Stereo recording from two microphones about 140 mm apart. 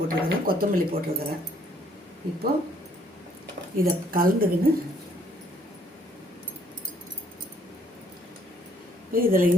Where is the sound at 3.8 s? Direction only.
90° right.